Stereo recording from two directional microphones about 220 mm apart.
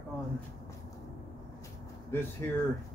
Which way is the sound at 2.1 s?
10° left (ahead or behind).